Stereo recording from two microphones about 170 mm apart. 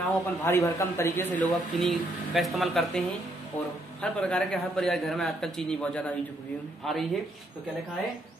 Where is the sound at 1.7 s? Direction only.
Centre (ahead or behind).